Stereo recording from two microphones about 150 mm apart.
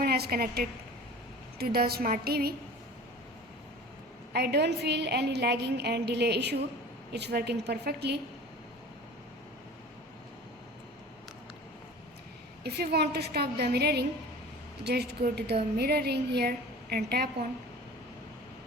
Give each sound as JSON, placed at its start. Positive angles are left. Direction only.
{"t": 0.0, "sound": "a woman's voice", "side_deg": -90}
{"t": 4.3, "sound": "a woman's voice", "side_deg": -90}
{"t": 12.6, "sound": "a woman's voice", "side_deg": -90}